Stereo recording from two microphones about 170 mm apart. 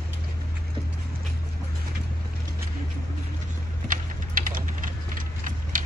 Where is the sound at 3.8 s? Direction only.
55° right (ahead or behind).